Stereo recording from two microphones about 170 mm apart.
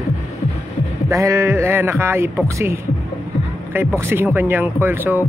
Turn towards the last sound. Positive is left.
turn(degrees=-10)  # may be behind; listen again after turning